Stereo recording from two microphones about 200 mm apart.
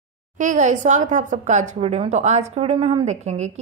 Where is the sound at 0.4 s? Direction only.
40° right (ahead or behind).